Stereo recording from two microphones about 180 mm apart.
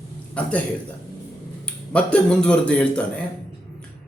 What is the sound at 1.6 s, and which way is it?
Speech, 5° left (ahead or behind).